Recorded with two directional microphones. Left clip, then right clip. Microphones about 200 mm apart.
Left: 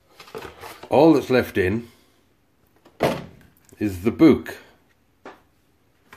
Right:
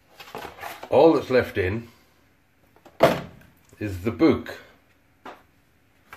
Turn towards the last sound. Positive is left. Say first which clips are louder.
# left 5 dB
turn(degrees=45)  # may be behind; listen again after turning